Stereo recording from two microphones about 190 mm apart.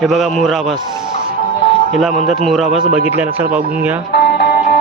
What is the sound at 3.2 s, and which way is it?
Speech, 10° right (ahead or behind).